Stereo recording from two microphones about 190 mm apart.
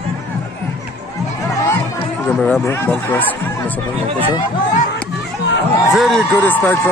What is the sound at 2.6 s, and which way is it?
Speech, 10° left (ahead or behind).